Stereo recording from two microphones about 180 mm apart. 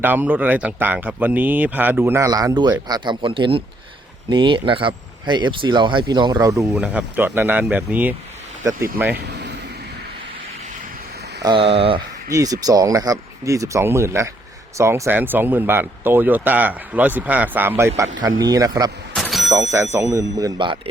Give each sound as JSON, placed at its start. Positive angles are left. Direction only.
{"t": 0.0, "sound": "speech", "side_deg": -10}
{"t": 6.7, "sound": "speech", "side_deg": -10}
{"t": 9.1, "sound": "speech", "side_deg": -70}
{"t": 11.4, "sound": "speech", "side_deg": -30}
{"t": 12.3, "sound": "speech", "side_deg": -20}
{"t": 19.1, "sound": "vehicle", "side_deg": 0}
{"t": 19.5, "sound": "speech", "side_deg": -15}